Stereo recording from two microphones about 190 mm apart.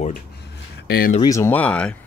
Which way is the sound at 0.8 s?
55° left (ahead or behind).